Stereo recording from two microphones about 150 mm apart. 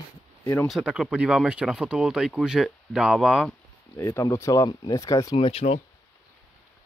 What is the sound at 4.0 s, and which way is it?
Speech, 20° left (ahead or behind).